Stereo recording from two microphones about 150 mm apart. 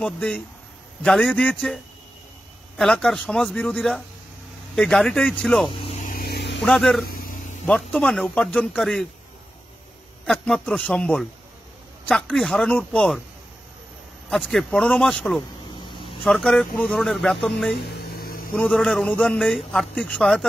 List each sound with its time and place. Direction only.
0.0 s a man's voice: 5° left (ahead or behind)
2.8 s a man's voice: 5° left (ahead or behind)
6.0 s vehicle: 80° left
6.6 s a man's voice: 5° left (ahead or behind)
10.2 s a man's voice: 5° left (ahead or behind)
14.3 s a man's voice: centre (ahead or behind)
17.8 s a sound: 90° left
18.5 s a man's voice: 5° left (ahead or behind)